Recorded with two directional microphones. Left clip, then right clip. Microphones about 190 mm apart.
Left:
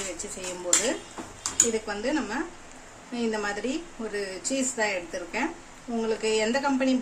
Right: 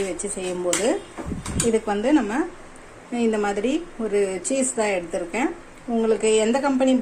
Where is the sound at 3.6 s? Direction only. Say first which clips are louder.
Right 7 dB; 15° right (ahead or behind).